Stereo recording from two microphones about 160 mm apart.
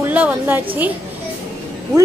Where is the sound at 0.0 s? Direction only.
10° right (ahead or behind).